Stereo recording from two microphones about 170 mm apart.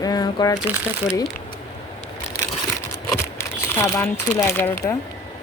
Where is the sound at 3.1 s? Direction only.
15° left (ahead or behind).